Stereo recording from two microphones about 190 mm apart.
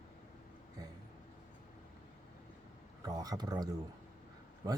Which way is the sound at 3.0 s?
20° right (ahead or behind).